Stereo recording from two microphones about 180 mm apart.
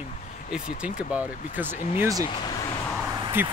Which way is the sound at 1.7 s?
40° left (ahead or behind).